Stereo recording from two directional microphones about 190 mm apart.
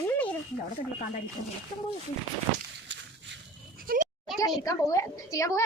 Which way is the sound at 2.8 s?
70° right (ahead or behind).